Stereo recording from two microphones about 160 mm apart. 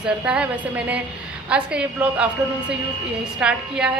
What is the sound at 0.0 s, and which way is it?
Speech, 10° right (ahead or behind).